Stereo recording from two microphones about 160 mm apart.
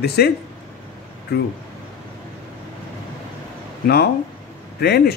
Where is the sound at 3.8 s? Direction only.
80° left.